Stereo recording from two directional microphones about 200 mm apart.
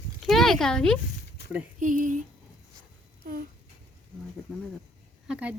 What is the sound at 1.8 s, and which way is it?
Speech, 40° right (ahead or behind).